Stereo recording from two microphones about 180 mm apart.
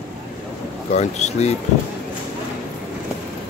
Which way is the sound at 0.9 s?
40° left (ahead or behind).